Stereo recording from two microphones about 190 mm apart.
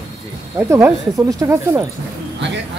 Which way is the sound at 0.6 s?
10° right (ahead or behind).